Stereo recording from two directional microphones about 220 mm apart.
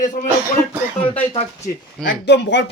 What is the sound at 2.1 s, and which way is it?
Speech, 50° left (ahead or behind).